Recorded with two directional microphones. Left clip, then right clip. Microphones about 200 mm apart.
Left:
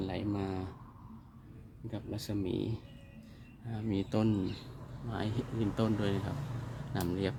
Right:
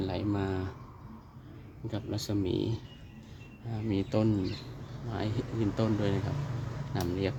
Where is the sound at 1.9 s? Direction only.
10° right (ahead or behind).